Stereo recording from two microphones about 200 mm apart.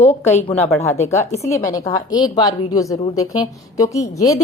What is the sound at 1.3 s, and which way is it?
Speech, 35° left (ahead or behind).